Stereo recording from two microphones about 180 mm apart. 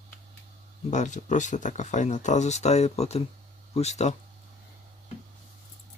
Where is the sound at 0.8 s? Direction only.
40° left (ahead or behind).